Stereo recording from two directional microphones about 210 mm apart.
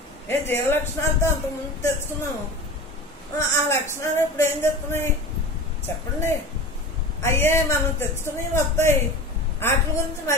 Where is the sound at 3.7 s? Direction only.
15° left (ahead or behind).